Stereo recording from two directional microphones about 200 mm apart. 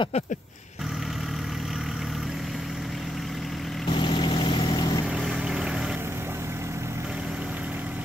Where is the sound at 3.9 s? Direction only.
25° left (ahead or behind).